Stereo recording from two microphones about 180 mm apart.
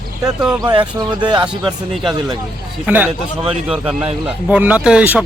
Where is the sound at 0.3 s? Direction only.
5° right (ahead or behind).